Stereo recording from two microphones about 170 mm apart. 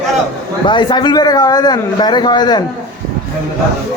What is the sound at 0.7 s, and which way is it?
Speech, 25° left (ahead or behind).